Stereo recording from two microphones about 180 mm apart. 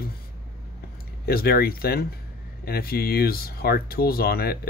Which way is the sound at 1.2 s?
60° left (ahead or behind).